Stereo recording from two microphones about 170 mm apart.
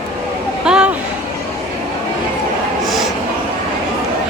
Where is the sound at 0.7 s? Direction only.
5° right (ahead or behind).